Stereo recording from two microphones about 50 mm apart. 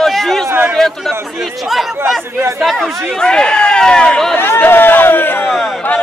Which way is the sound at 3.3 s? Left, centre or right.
Centre.